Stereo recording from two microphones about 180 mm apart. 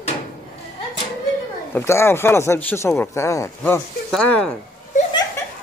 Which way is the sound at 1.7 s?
15° left (ahead or behind).